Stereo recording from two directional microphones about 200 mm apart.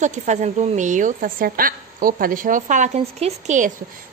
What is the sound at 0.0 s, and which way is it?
A woman's voice, 35° right (ahead or behind).